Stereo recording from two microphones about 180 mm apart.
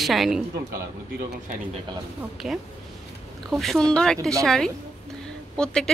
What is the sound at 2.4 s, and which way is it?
Speech, centre (ahead or behind).